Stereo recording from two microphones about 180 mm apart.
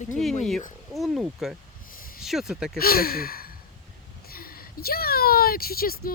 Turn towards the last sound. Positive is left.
turn(degrees=55)  # may be behind; listen again after turning